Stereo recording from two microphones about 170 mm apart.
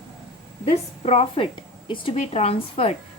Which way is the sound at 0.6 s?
40° left (ahead or behind).